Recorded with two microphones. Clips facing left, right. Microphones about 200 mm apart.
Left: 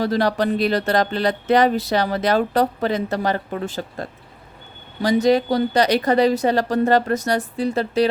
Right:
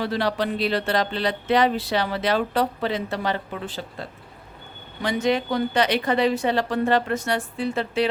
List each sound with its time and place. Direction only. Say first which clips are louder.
0.0 s speech: left 5 dB; 45° left (ahead or behind)